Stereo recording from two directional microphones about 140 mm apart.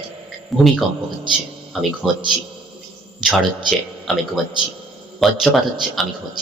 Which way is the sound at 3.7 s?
Centre (ahead or behind).